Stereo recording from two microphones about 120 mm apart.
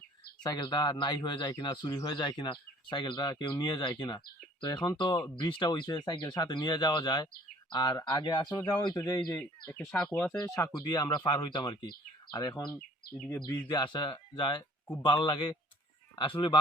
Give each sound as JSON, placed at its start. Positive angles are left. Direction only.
{"t": 0.4, "sound": "speech", "side_deg": 35}
{"t": 9.6, "sound": "speech", "side_deg": 10}
{"t": 10.4, "sound": "speech", "side_deg": 25}
{"t": 10.7, "sound": "speech", "side_deg": 35}
{"t": 13.1, "sound": "speech", "side_deg": 10}
{"t": 13.4, "sound": "speech", "side_deg": 35}